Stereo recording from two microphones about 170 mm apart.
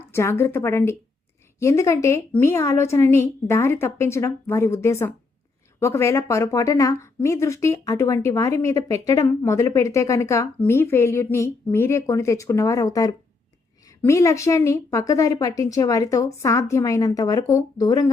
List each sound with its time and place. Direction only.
0.1 s a woman's voice: 15° left (ahead or behind)